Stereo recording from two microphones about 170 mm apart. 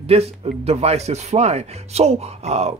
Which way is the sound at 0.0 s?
35° right (ahead or behind).